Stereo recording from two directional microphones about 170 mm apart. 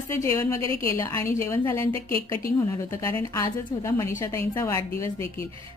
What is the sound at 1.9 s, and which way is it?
Speech, 30° right (ahead or behind).